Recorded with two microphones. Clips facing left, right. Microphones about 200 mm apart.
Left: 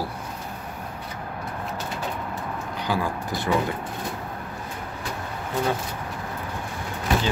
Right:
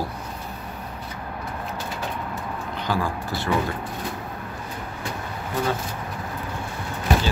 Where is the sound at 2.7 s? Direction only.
15° left (ahead or behind).